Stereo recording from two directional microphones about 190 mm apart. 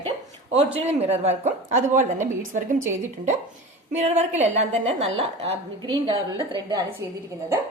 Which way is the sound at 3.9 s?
35° right (ahead or behind).